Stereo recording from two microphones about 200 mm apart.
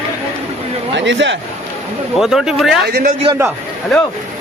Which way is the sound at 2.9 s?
50° right (ahead or behind).